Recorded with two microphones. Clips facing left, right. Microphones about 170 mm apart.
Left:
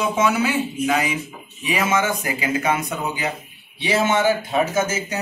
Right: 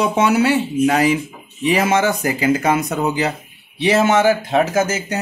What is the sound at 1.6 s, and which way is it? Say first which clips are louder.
Speech: right 5 dB; 75° right (ahead or behind).